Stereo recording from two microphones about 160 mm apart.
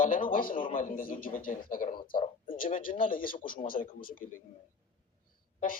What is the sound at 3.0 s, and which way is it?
A man's voice, 60° left (ahead or behind).